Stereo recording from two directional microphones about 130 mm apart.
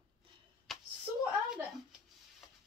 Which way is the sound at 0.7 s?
Centre (ahead or behind).